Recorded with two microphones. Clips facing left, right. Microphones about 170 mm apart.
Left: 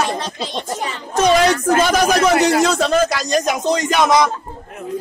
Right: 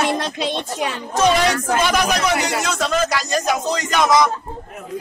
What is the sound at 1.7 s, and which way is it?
Speech, 45° left (ahead or behind).